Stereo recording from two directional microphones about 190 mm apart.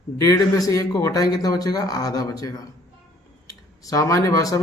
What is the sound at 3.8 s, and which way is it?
Speech, 15° left (ahead or behind).